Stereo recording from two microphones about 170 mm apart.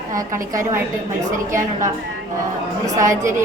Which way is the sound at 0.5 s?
15° right (ahead or behind).